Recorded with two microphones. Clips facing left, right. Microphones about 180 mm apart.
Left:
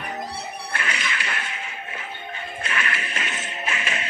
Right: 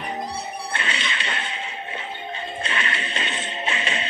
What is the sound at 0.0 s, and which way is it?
Music, 25° right (ahead or behind).